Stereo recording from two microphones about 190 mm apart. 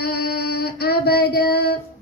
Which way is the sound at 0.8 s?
55° left (ahead or behind).